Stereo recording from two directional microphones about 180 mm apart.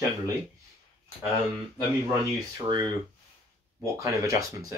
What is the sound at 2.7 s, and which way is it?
Speech, 25° right (ahead or behind).